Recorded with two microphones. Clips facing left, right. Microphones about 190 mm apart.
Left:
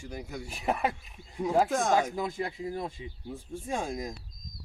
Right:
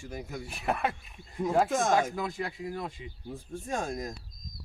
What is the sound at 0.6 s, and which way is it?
Speech, 20° left (ahead or behind).